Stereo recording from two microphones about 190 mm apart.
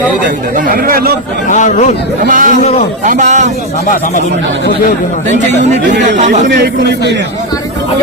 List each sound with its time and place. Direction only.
0.5 s speech: 50° right (ahead or behind)
1.5 s a man's voice: 40° left (ahead or behind)
2.2 s speech: 45° right (ahead or behind)
6.0 s speech: 40° right (ahead or behind)